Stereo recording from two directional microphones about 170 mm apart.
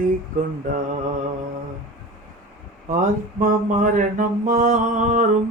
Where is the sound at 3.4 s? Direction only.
50° right (ahead or behind).